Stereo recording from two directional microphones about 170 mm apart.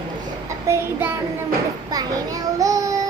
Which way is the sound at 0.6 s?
15° right (ahead or behind).